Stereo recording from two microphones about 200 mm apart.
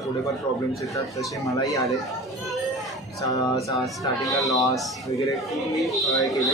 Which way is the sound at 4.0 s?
15° left (ahead or behind).